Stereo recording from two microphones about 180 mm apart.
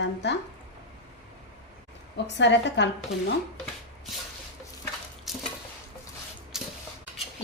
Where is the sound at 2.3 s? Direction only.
75° left (ahead or behind).